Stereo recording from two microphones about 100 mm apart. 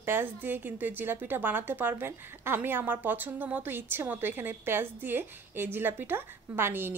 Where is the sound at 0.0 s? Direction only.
20° right (ahead or behind).